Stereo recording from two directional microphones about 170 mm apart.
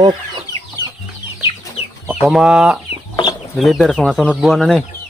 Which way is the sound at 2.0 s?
Centre (ahead or behind).